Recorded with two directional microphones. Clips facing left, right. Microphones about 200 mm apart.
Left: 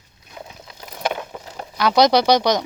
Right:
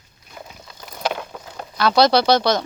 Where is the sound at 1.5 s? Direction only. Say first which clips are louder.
Even; 15° left (ahead or behind).